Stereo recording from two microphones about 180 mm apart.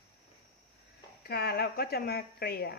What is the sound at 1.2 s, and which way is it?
A woman's voice, 60° left (ahead or behind).